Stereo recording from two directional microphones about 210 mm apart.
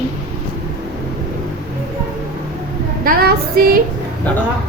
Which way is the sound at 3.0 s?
45° right (ahead or behind).